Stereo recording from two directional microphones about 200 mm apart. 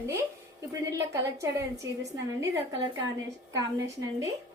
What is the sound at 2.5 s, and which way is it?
A woman's voice, 20° right (ahead or behind).